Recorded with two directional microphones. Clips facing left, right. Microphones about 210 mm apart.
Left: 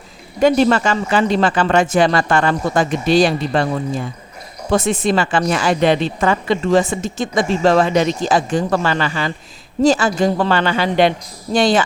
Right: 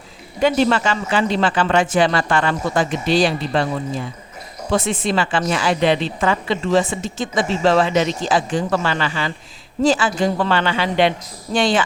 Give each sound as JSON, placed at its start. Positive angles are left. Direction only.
{"t": 0.3, "sound": "a woman's voice", "side_deg": 45}
{"t": 4.7, "sound": "a woman's voice", "side_deg": 45}